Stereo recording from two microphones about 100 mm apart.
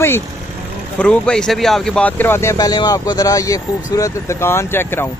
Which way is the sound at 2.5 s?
40° left (ahead or behind).